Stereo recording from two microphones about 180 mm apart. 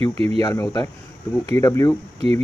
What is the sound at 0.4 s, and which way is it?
Speech, 20° left (ahead or behind).